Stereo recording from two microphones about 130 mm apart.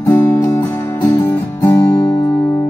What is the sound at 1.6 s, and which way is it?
Guitar, 20° left (ahead or behind).